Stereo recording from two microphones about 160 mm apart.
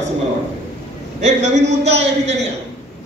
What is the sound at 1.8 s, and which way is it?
Speech, 45° right (ahead or behind).